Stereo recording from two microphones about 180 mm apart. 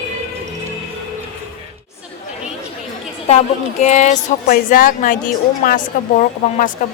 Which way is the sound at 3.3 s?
40° left (ahead or behind).